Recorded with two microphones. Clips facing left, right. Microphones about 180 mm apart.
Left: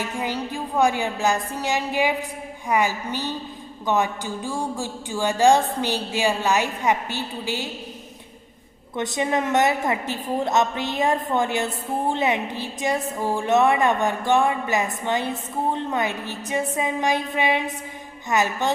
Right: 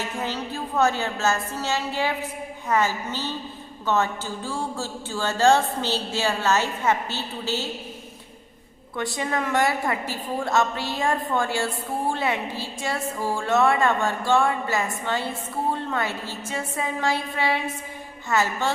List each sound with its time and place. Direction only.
0.2 s speech: 10° left (ahead or behind)
9.0 s a woman's voice: 20° left (ahead or behind)